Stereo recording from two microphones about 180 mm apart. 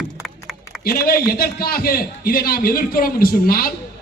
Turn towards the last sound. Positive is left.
turn(degrees=55)  # may be behind; listen again after turning